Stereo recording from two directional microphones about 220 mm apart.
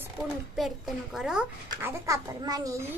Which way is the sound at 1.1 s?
5° right (ahead or behind).